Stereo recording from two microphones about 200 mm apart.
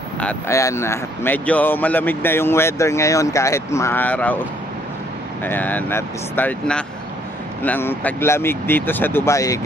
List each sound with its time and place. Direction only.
0.2 s speech: 10° left (ahead or behind)
5.4 s speech: 10° left (ahead or behind)